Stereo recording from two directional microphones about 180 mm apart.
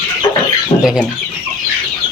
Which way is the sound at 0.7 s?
35° left (ahead or behind).